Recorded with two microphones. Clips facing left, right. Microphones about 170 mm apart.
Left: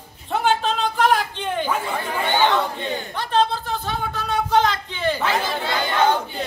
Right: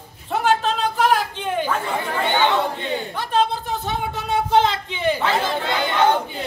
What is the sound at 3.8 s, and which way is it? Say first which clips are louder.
Chatter: right 2 dB; 25° right (ahead or behind).